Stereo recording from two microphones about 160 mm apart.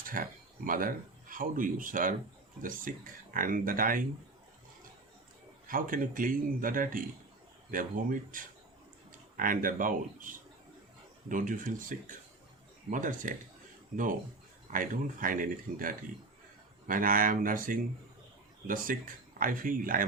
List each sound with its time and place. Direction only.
0.1 s speech: 60° right (ahead or behind)
5.6 s speech: 60° right (ahead or behind)